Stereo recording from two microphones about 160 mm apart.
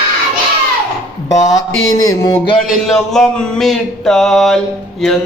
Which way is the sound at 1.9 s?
20° left (ahead or behind).